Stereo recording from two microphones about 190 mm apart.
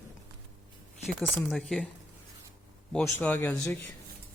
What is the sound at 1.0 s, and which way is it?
Speech, centre (ahead or behind).